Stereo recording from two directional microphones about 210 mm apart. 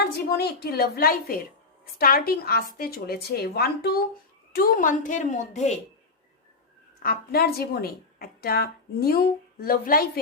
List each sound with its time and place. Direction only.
0.0 s a woman's voice: 50° left (ahead or behind); by 5.7 s 35° left (ahead or behind)
7.0 s a woman's voice: 45° left (ahead or behind)